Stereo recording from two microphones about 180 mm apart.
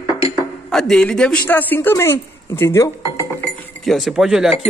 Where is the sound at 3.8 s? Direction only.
Centre (ahead or behind).